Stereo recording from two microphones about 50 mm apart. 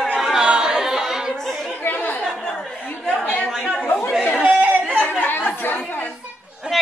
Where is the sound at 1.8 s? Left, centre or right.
Left.